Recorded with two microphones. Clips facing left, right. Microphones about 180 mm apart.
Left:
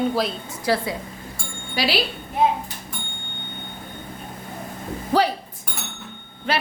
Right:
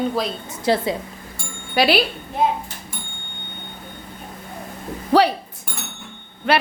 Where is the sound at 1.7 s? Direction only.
55° right (ahead or behind).